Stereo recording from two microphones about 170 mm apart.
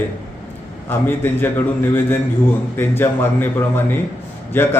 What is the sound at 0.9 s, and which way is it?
A man's voice, 10° left (ahead or behind).